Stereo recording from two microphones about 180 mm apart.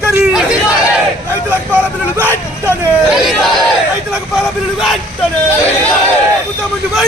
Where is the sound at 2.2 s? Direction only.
10° right (ahead or behind).